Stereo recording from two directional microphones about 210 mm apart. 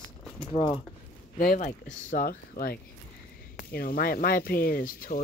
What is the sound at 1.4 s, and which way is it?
Speech, 40° left (ahead or behind).